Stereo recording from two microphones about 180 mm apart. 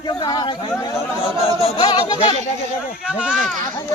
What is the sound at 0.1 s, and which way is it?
Speech, 25° left (ahead or behind).